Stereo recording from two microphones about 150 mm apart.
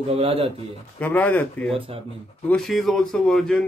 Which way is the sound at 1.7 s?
40° right (ahead or behind).